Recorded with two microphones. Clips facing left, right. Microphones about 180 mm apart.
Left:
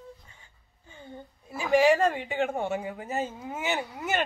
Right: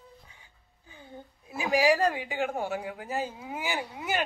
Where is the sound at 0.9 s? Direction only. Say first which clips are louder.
Left 2 dB; 5° right (ahead or behind).